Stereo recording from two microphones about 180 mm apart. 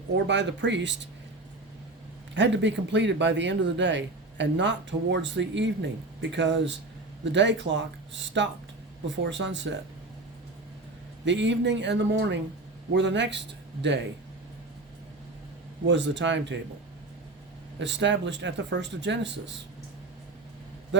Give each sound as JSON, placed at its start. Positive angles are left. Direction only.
{"t": 0.3, "sound": "speech", "side_deg": -75}
{"t": 2.3, "sound": "speech", "side_deg": -80}
{"t": 11.3, "sound": "speech", "side_deg": -80}
{"t": 15.9, "sound": "speech", "side_deg": -80}
{"t": 17.7, "sound": "speech", "side_deg": -80}
{"t": 20.9, "sound": "a man's voice", "side_deg": -85}